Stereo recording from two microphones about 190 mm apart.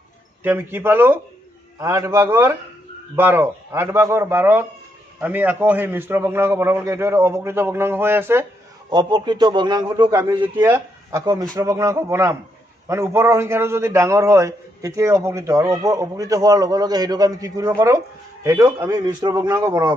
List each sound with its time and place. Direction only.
0.4 s a man's voice: 10° right (ahead or behind)
8.9 s a man's voice: 25° right (ahead or behind)
10.5 s a man's voice: 10° right (ahead or behind)